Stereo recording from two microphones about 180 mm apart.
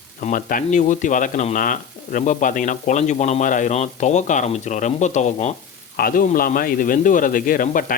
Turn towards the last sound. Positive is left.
turn(degrees=50)  # may be behind; listen again after turning